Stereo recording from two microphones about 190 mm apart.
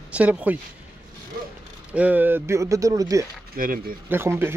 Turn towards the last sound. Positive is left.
turn(degrees=-10)  # may be behind; listen again after turning